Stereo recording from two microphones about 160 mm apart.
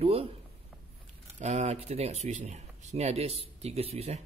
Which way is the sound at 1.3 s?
45° right (ahead or behind).